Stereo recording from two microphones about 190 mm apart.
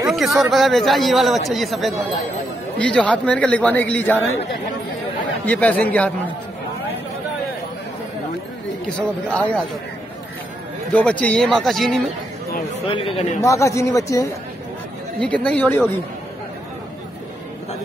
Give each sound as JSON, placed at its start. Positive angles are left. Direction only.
{"t": 0.1, "sound": "a man's voice", "side_deg": 0}
{"t": 5.4, "sound": "a man's voice", "side_deg": 10}
{"t": 8.8, "sound": "a man's voice", "side_deg": 5}
{"t": 10.9, "sound": "a man's voice", "side_deg": 5}
{"t": 12.9, "sound": "a man's voice", "side_deg": 30}
{"t": 13.4, "sound": "a man's voice", "side_deg": 15}
{"t": 15.1, "sound": "a man's voice", "side_deg": 5}